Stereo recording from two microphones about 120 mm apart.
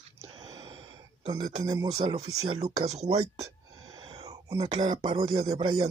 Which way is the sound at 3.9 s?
40° right (ahead or behind).